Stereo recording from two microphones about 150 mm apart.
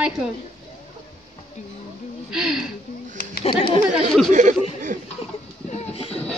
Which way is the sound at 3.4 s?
35° left (ahead or behind).